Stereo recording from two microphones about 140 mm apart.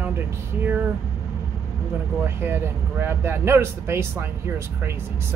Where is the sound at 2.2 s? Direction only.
15° right (ahead or behind).